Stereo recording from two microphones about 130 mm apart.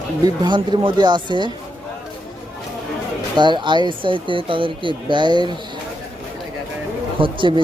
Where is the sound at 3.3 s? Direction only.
35° right (ahead or behind).